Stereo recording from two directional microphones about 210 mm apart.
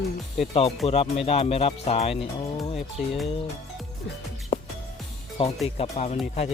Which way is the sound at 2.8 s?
Centre (ahead or behind).